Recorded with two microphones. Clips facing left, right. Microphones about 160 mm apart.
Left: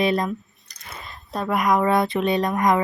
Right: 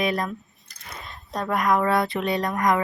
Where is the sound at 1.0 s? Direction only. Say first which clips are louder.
Left 2 dB; 5° left (ahead or behind); by 2.7 s 20° left (ahead or behind).